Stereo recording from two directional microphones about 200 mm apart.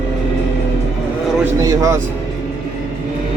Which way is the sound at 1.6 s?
15° right (ahead or behind).